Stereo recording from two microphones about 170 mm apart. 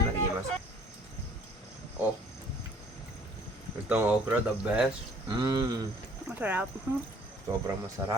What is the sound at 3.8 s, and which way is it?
Speech, 10° right (ahead or behind).